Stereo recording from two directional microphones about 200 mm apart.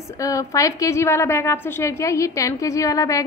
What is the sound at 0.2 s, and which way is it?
A woman's voice, 15° left (ahead or behind).